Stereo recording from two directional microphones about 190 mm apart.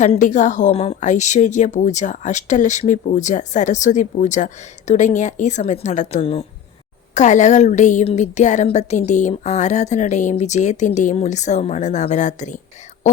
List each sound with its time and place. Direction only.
0.0 s a woman's voice: 40° left (ahead or behind)